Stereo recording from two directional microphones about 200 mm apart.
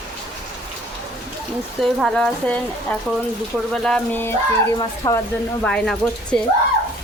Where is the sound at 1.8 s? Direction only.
Centre (ahead or behind).